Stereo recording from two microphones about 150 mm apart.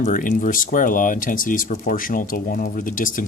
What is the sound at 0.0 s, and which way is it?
Speech, 60° left (ahead or behind).